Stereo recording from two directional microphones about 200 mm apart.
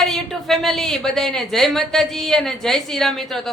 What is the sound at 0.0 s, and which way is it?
A woman's voice, centre (ahead or behind).